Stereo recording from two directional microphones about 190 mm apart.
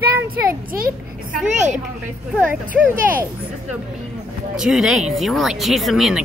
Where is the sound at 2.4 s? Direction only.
10° right (ahead or behind).